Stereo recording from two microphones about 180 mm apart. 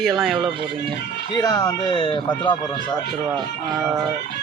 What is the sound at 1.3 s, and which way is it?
Speech, 25° left (ahead or behind).